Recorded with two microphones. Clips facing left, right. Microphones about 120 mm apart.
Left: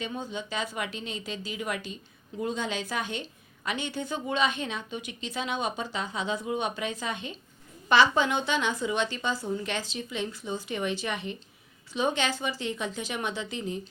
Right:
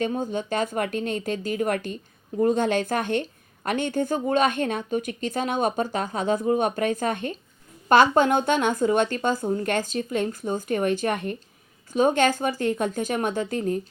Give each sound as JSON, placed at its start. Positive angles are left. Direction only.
{"t": 0.0, "sound": "a woman's voice", "side_deg": -50}